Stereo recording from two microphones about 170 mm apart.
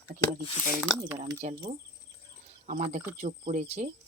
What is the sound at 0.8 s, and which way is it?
Speech, 10° right (ahead or behind).